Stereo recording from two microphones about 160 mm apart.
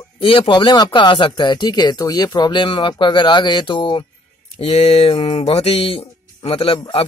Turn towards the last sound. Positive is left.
turn(degrees=35)  # may be behind; listen again after turning